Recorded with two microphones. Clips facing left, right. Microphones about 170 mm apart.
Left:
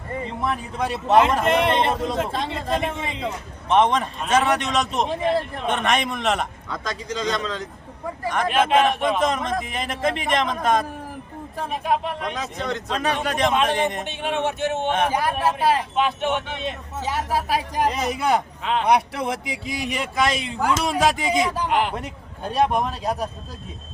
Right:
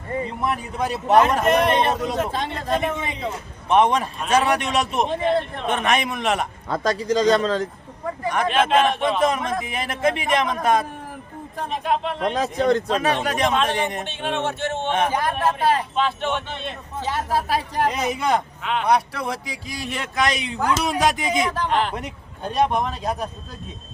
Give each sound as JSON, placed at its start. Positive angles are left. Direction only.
{"t": 0.4, "sound": "a man's voice", "side_deg": -5}
{"t": 1.5, "sound": "a man's voice", "side_deg": 25}
{"t": 2.0, "sound": "a man's voice", "side_deg": 0}
{"t": 2.8, "sound": "a man's voice", "side_deg": 25}
{"t": 3.7, "sound": "a man's voice", "side_deg": -10}
{"t": 6.7, "sound": "speech", "side_deg": -40}
{"t": 8.3, "sound": "a man's voice", "side_deg": 0}
{"t": 12.3, "sound": "speech", "side_deg": -40}
{"t": 13.0, "sound": "a man's voice", "side_deg": 0}
{"t": 18.6, "sound": "a man's voice", "side_deg": 30}
{"t": 20.1, "sound": "a man's voice", "side_deg": 0}